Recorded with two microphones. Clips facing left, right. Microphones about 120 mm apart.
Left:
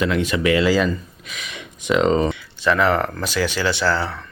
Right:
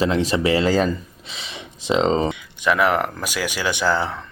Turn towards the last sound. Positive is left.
turn(degrees=-20)  # may be behind; listen again after turning